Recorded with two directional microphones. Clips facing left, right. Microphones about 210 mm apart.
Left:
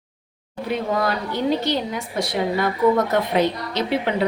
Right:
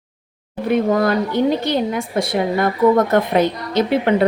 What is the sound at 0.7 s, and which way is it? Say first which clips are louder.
A woman's voice: right 7 dB; 50° right (ahead or behind).